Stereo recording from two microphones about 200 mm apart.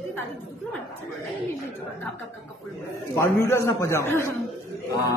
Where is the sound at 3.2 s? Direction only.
15° left (ahead or behind).